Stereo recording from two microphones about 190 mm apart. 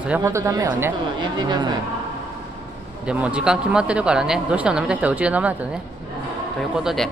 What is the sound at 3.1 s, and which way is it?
Speech, 5° right (ahead or behind).